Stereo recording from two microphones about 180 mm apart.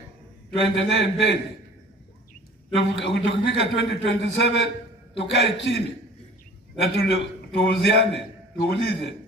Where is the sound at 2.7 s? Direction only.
75° left (ahead or behind).